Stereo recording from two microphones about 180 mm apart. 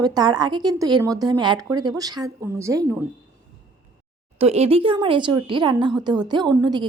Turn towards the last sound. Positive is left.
turn(degrees=-25)  # may be behind; listen again after turning